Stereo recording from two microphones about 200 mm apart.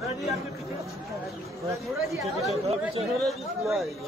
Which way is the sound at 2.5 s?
30° right (ahead or behind).